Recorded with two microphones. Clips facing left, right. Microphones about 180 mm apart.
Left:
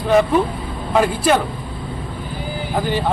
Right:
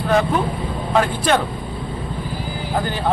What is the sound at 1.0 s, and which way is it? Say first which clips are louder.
Speech: left 4 dB; 5° left (ahead or behind).